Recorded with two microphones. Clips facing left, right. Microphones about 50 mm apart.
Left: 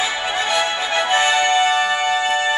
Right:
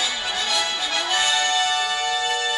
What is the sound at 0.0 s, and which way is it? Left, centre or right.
Music, left.